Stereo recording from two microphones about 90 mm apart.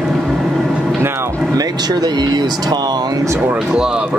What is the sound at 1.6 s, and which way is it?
Speech, 50° right (ahead or behind).